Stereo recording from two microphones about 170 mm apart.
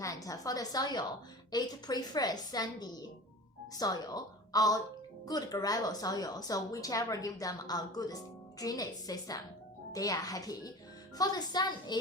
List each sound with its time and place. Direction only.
0.0 s a woman's voice: 20° left (ahead or behind)